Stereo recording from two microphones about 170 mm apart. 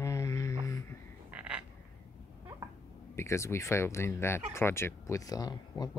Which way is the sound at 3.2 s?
15° left (ahead or behind).